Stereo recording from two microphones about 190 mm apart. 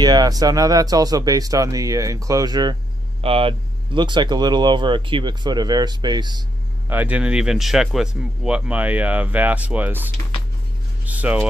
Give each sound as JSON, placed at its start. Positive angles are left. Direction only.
{"t": 0.0, "sound": "speech", "side_deg": -20}
{"t": 6.9, "sound": "speech", "side_deg": -10}